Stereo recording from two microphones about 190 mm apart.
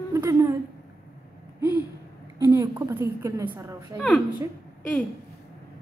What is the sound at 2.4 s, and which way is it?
A woman's voice, 15° right (ahead or behind).